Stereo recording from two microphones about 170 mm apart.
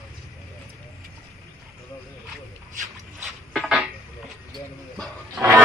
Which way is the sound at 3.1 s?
Centre (ahead or behind).